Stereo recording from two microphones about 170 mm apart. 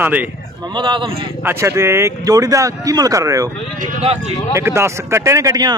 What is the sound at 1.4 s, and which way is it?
Speech, 15° right (ahead or behind).